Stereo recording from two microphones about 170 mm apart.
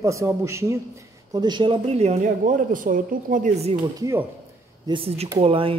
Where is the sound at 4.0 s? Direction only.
15° right (ahead or behind).